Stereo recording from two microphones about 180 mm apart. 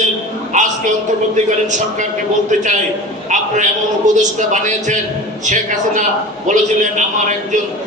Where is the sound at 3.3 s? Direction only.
45° right (ahead or behind).